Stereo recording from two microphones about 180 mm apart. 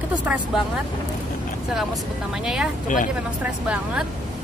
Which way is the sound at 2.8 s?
45° left (ahead or behind).